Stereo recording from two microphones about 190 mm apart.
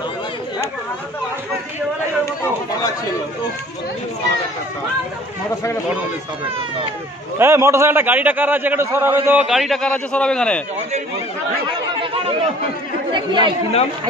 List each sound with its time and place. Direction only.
7.3 s a man's voice: 15° right (ahead or behind)
9.5 s a man's voice: centre (ahead or behind)
12.0 s chatter: 30° right (ahead or behind)
13.1 s speech: 25° right (ahead or behind)